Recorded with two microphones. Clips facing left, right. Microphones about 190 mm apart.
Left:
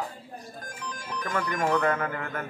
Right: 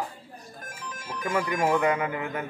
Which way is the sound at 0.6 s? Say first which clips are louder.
Right 1 dB; 25° right (ahead or behind).